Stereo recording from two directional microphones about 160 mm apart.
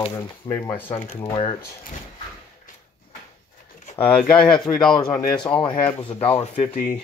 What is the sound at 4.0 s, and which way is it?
Speech, 10° left (ahead or behind).